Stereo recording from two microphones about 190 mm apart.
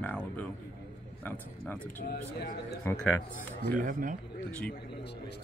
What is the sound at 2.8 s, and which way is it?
Speech, 10° left (ahead or behind).